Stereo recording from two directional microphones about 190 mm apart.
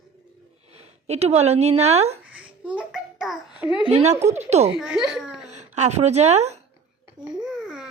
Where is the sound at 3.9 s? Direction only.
35° right (ahead or behind).